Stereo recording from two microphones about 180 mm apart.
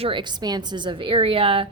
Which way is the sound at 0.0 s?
25° right (ahead or behind).